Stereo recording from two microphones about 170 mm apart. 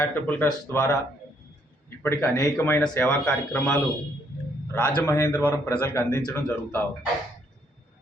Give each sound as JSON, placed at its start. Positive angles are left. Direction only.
{"t": 0.0, "sound": "a man's voice", "side_deg": 10}
{"t": 2.0, "sound": "a man's voice", "side_deg": 15}
{"t": 4.9, "sound": "a man's voice", "side_deg": 15}